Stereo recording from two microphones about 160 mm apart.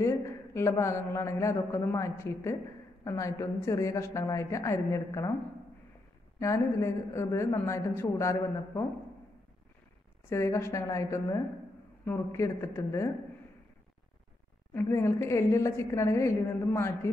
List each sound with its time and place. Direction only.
0.0 s a man's voice: 20° left (ahead or behind)
6.4 s a man's voice: 20° left (ahead or behind)
10.3 s a man's voice: 15° left (ahead or behind)
14.7 s a man's voice: 15° left (ahead or behind)